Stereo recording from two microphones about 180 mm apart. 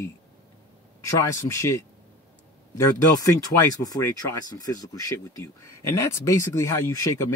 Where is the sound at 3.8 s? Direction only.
20° left (ahead or behind).